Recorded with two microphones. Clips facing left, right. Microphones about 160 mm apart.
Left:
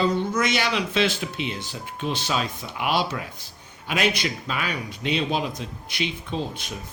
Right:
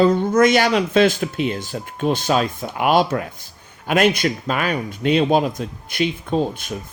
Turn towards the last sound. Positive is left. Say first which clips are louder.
# right 9 dB
turn(degrees=-50)  # may be behind; listen again after turning